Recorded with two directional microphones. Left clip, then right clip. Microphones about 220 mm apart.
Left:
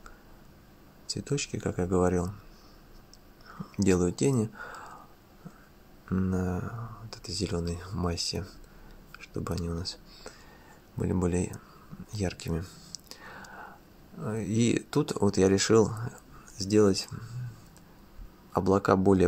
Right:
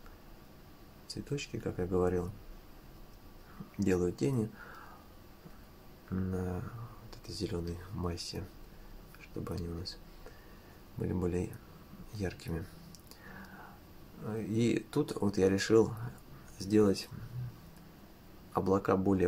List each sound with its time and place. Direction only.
1.0 s speech: 35° left (ahead or behind)
3.8 s speech: 35° left (ahead or behind)
6.0 s speech: 30° left (ahead or behind)
9.2 s a sound: 30° left (ahead or behind)
11.0 s speech: 30° left (ahead or behind)
12.1 s a sound: 30° left (ahead or behind)
14.2 s speech: 30° left (ahead or behind)
18.5 s speech: 30° left (ahead or behind)